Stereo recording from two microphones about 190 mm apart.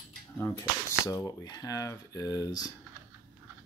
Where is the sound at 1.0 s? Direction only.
20° left (ahead or behind).